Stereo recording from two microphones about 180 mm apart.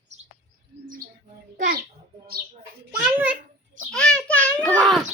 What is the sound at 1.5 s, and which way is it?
Speech, 55° right (ahead or behind).